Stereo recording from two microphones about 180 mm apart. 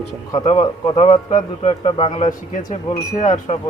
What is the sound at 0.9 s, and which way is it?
A man's voice, 35° left (ahead or behind).